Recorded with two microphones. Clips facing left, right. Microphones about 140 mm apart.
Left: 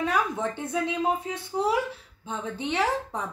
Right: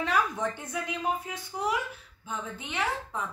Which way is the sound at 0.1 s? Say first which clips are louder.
Left 1 dB; 25° left (ahead or behind).